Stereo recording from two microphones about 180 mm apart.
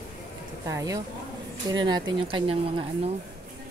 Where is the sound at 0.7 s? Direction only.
20° right (ahead or behind).